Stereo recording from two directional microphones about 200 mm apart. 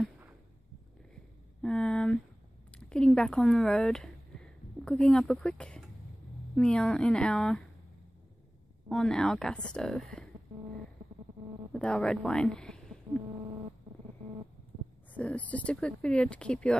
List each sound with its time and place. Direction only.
1.6 s a sound: 5° left (ahead or behind)
2.7 s speech: 5° left (ahead or behind)
8.8 s speech: 5° left (ahead or behind)
11.7 s speech: 5° left (ahead or behind)
13.1 s a sound: 20° right (ahead or behind)
15.1 s speech: 5° left (ahead or behind)